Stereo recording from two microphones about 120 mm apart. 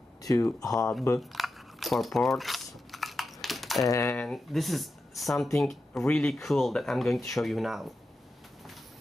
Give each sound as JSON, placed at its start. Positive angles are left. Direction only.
{"t": 0.2, "sound": "speech", "side_deg": 25}
{"t": 1.3, "sound": "a sound", "side_deg": 0}
{"t": 3.8, "sound": "coin", "side_deg": 25}
{"t": 4.2, "sound": "speech", "side_deg": 5}